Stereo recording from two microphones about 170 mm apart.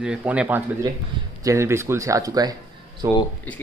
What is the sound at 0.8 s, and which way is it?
Speech, 20° right (ahead or behind).